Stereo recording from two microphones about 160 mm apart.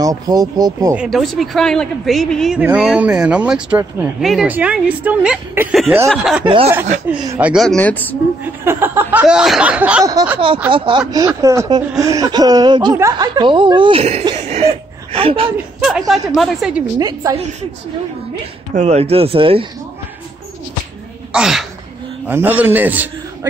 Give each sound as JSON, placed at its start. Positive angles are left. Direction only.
{"t": 0.0, "sound": "speech", "side_deg": -20}
{"t": 0.9, "sound": "speech", "side_deg": 0}
{"t": 6.4, "sound": "speech", "side_deg": -30}
{"t": 7.3, "sound": "speech", "side_deg": -10}
{"t": 7.6, "sound": "speech", "side_deg": 10}
{"t": 8.6, "sound": "speech", "side_deg": -15}
{"t": 10.7, "sound": "speech", "side_deg": -30}
{"t": 14.3, "sound": "cough", "side_deg": -40}
{"t": 15.1, "sound": "speech", "side_deg": -35}
{"t": 15.5, "sound": "speech", "side_deg": 0}
{"t": 17.0, "sound": "speech", "side_deg": -20}
{"t": 18.8, "sound": "speech", "side_deg": -40}
{"t": 21.3, "sound": "speech", "side_deg": -5}